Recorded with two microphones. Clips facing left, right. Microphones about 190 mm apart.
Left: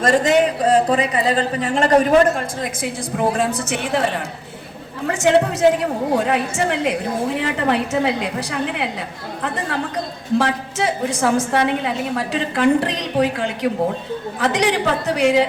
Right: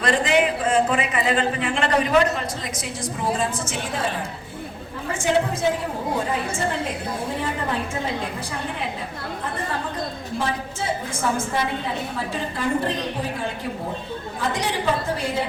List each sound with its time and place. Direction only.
0.0 s speech: 45° left (ahead or behind); by 3.5 s 60° left (ahead or behind)
3.7 s a woman's voice: 70° left (ahead or behind)